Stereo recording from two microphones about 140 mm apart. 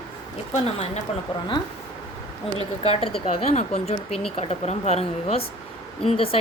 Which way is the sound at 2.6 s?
45° left (ahead or behind).